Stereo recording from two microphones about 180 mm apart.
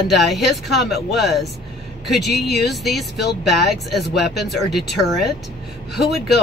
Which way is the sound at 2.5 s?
Centre (ahead or behind).